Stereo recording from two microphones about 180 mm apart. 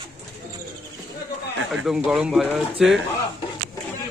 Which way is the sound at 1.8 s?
5° right (ahead or behind).